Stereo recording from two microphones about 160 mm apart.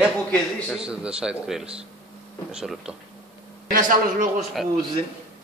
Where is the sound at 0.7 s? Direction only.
5° right (ahead or behind).